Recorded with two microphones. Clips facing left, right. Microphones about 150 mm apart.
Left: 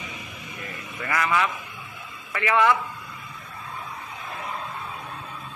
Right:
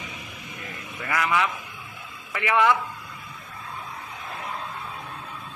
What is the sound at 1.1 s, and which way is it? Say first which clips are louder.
Speech: even; 15° right (ahead or behind).